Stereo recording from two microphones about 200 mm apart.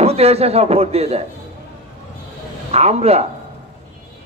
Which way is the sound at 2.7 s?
30° right (ahead or behind).